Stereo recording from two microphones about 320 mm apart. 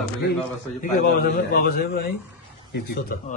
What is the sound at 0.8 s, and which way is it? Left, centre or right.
A man's voice, left.